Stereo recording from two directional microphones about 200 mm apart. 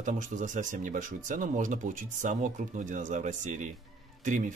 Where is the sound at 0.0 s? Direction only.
40° right (ahead or behind).